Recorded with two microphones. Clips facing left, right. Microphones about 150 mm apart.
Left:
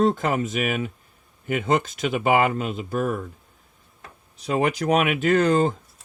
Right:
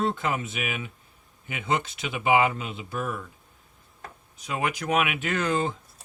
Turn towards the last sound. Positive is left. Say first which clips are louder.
# left 7 dB
turn(degrees=40)  # may be behind; listen again after turning